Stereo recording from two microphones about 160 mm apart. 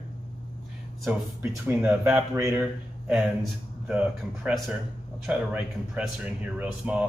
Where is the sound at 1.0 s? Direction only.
15° right (ahead or behind).